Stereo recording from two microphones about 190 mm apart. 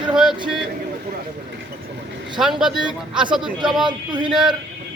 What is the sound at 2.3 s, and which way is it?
A man's voice, centre (ahead or behind).